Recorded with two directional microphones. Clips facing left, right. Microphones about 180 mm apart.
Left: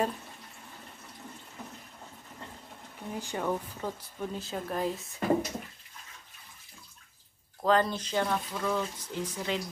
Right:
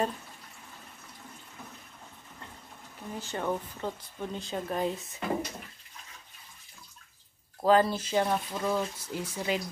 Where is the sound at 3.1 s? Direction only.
15° left (ahead or behind).